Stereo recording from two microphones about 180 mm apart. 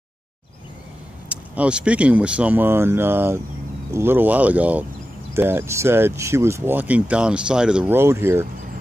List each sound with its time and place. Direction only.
1.3 s speech: 5° right (ahead or behind)